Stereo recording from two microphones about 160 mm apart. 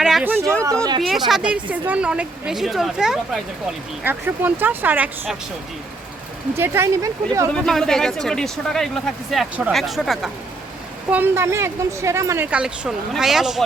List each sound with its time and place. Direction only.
0.0 s speech: 5° right (ahead or behind)
0.6 s speech: 20° right (ahead or behind)
1.3 s speech: 5° right (ahead or behind)
6.6 s speech: 15° right (ahead or behind)
7.5 s speech: centre (ahead or behind)
11.1 s speech: 15° right (ahead or behind)
12.5 s speech: 5° right (ahead or behind)